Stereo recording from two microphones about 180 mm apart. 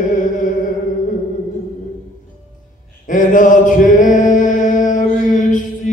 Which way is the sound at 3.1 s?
45° left (ahead or behind).